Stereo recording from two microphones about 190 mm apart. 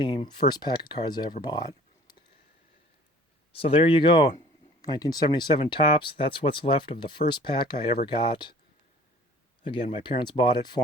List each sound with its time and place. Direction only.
0.0 s speech: 25° left (ahead or behind)
1.5 s a sound: 20° left (ahead or behind)
3.5 s speech: 30° left (ahead or behind)
9.6 s speech: 25° left (ahead or behind)